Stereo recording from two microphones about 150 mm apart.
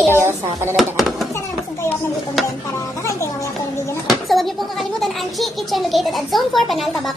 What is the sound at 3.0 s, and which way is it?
Speech, 20° left (ahead or behind).